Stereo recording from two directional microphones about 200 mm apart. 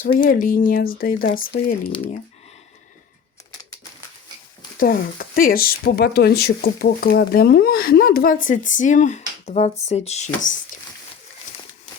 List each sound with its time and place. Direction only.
0.0 s speech: 45° left (ahead or behind)
4.8 s speech: 45° left (ahead or behind)